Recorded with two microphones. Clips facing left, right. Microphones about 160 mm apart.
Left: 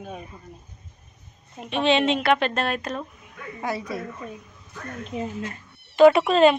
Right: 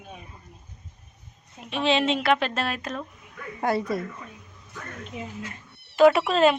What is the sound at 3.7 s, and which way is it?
Speech, 55° right (ahead or behind).